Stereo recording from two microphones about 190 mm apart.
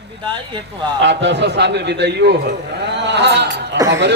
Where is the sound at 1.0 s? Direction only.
70° right (ahead or behind).